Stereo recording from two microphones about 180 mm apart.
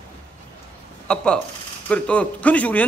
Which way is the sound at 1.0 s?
5° left (ahead or behind).